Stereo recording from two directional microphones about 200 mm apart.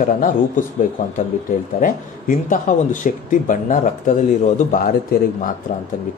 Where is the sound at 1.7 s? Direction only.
45° left (ahead or behind).